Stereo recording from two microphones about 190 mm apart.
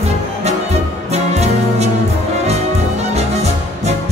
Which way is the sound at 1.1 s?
35° right (ahead or behind).